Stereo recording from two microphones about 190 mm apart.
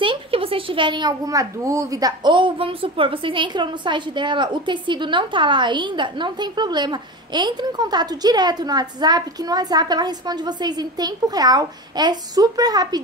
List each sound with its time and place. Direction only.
0.0 s a child's voice: 30° right (ahead or behind)